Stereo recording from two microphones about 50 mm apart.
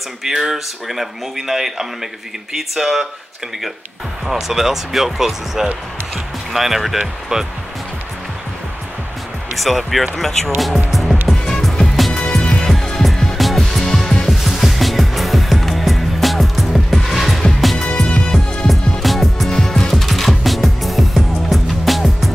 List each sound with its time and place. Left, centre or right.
0.2 s speech: centre
4.3 s speech: centre
9.6 s speech: centre
10.9 s music: centre
12.1 s music: centre
12.7 s music: centre
14.3 s music: centre
17.9 s music: centre
19.0 s music: centre